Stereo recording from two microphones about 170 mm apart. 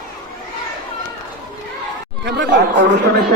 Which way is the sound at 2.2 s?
90° right.